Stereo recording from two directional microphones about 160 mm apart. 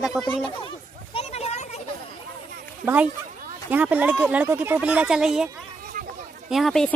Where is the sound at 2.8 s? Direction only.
10° right (ahead or behind).